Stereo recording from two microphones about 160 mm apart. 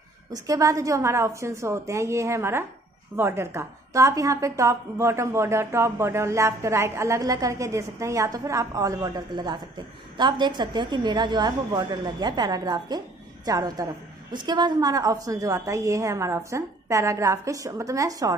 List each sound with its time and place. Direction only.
0.3 s a woman's voice: 20° right (ahead or behind)